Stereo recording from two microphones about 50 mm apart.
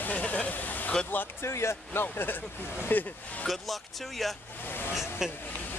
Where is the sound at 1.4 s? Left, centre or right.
Left.